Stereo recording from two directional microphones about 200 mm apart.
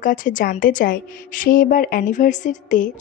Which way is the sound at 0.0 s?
40° left (ahead or behind).